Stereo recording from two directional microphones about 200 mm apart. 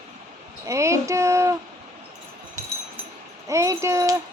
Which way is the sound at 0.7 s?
15° right (ahead or behind).